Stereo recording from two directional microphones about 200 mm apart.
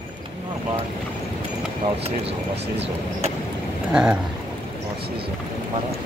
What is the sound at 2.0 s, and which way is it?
Speech, 30° right (ahead or behind).